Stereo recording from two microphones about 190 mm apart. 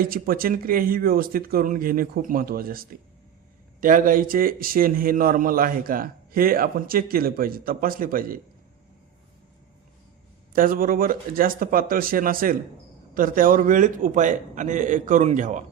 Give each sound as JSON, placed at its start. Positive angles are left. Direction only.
{"t": 0.0, "sound": "a man's voice", "side_deg": -50}
{"t": 10.5, "sound": "a man's voice", "side_deg": -45}